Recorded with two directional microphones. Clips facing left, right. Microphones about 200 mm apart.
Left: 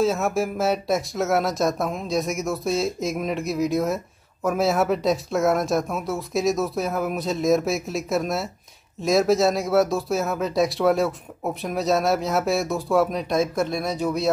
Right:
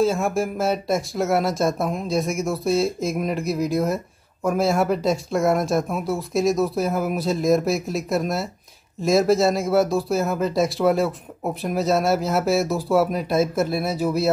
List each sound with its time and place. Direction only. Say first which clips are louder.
0.0 s speech: right 1 dB; centre (ahead or behind)